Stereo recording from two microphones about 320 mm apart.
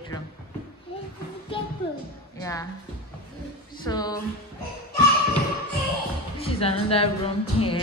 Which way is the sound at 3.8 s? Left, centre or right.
Centre.